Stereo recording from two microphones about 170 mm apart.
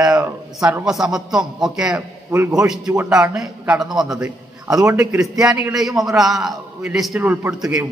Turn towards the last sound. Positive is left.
turn(degrees=-5)  # may be behind; listen again after turning